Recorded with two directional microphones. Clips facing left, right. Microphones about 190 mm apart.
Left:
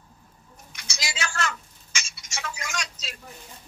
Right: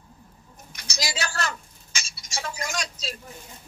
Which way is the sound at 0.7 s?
40° right (ahead or behind).